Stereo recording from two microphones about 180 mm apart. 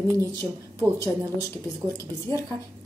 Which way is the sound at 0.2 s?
15° left (ahead or behind).